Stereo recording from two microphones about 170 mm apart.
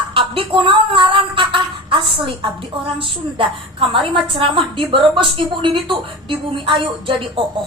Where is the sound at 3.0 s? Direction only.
30° right (ahead or behind).